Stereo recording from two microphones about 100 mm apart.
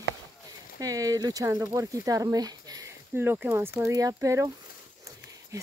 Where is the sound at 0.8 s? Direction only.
35° right (ahead or behind).